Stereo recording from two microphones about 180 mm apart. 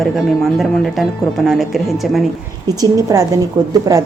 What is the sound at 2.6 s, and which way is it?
A woman's voice, 20° right (ahead or behind).